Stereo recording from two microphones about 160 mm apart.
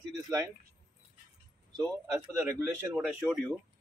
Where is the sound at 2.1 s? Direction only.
20° right (ahead or behind).